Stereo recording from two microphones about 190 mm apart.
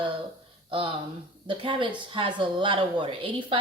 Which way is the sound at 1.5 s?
25° right (ahead or behind).